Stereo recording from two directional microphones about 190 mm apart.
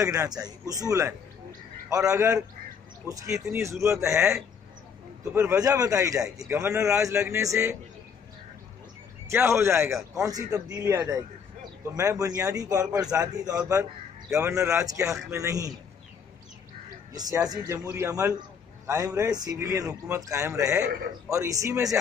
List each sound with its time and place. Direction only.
0.0 s a man's voice: 20° right (ahead or behind)
5.3 s a man's voice: 15° right (ahead or behind)
9.3 s a man's voice: 15° right (ahead or behind)
17.1 s a man's voice: 20° right (ahead or behind)